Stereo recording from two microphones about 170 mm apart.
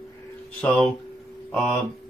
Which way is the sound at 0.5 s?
5° left (ahead or behind).